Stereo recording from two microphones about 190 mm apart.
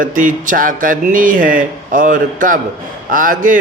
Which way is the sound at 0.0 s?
45° right (ahead or behind).